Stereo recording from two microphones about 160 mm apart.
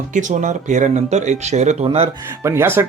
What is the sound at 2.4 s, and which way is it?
Speech, 15° right (ahead or behind).